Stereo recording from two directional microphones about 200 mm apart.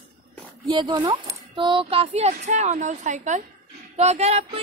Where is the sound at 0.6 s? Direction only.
20° right (ahead or behind).